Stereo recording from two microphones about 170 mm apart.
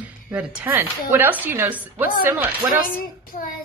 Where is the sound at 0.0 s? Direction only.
10° right (ahead or behind).